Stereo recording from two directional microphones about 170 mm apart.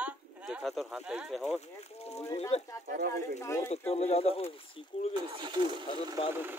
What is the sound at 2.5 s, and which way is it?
Speech, 35° left (ahead or behind).